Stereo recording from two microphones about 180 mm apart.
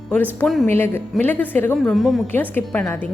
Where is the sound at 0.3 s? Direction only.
Centre (ahead or behind).